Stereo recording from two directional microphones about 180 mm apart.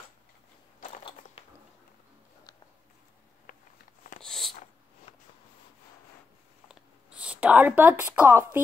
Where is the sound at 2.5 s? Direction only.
20° left (ahead or behind).